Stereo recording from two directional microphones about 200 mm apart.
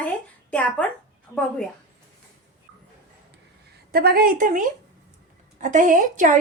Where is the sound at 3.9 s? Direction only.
50° right (ahead or behind).